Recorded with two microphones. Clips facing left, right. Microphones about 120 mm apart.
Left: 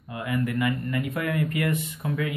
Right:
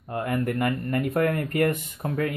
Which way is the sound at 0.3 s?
45° right (ahead or behind).